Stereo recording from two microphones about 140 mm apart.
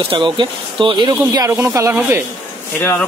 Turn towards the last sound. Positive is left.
turn(degrees=10)  # may be behind; listen again after turning